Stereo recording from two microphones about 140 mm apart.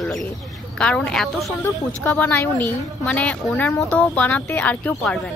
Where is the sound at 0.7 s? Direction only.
5° left (ahead or behind).